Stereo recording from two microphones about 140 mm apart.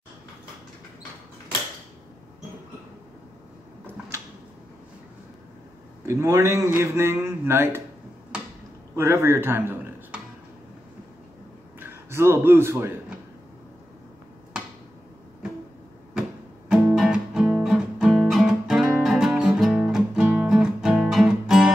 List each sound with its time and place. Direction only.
6.0 s a man's voice: 20° right (ahead or behind)
8.9 s speech: 15° right (ahead or behind)
11.8 s a man's voice: 15° right (ahead or behind)
16.2 s music: 5° right (ahead or behind)